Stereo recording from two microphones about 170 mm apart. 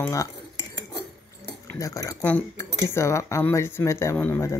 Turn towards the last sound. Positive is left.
turn(degrees=15)  # may be behind; listen again after turning